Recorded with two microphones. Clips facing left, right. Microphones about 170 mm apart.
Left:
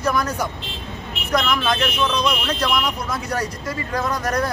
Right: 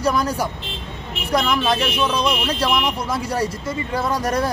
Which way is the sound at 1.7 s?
10° right (ahead or behind).